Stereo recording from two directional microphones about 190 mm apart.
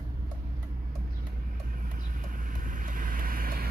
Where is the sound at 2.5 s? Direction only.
45° right (ahead or behind).